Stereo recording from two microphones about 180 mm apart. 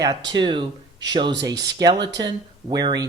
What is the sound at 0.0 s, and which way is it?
Speech, 20° right (ahead or behind).